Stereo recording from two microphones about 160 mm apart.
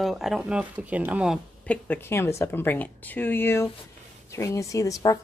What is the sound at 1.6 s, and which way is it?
A woman's voice, 10° left (ahead or behind).